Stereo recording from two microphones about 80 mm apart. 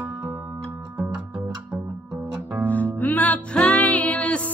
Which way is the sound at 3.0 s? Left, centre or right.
Left.